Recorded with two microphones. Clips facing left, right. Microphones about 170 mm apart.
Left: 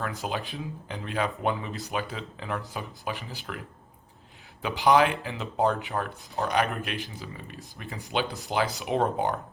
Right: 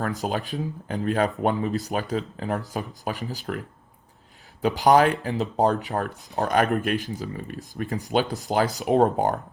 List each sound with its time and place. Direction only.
0.0 s speech: 40° right (ahead or behind)
4.6 s speech: 40° right (ahead or behind)